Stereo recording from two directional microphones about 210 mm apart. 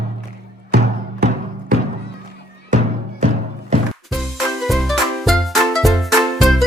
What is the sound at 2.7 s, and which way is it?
Music, 35° right (ahead or behind).